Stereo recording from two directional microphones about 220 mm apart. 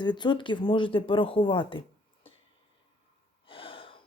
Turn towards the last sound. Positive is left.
turn(degrees=25)  # may be behind; listen again after turning